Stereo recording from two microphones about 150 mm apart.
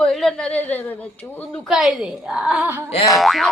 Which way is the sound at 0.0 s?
5° left (ahead or behind).